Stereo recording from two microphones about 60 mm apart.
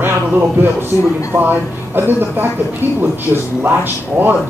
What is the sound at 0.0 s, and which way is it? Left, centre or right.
Speech, right.